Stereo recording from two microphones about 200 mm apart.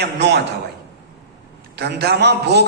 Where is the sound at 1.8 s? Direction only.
55° right (ahead or behind).